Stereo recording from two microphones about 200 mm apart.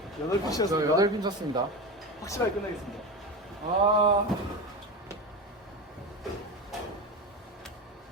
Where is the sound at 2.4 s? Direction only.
15° left (ahead or behind).